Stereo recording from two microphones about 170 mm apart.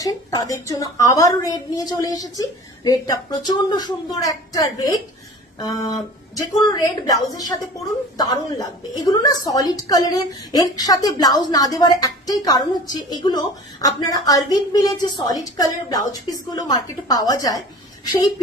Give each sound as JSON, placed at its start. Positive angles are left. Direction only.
{"t": 0.0, "sound": "a woman's voice", "side_deg": 20}